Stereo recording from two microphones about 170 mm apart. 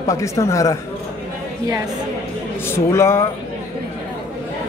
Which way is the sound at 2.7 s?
15° left (ahead or behind).